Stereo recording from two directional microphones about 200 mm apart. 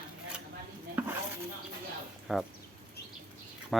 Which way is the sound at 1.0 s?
10° right (ahead or behind).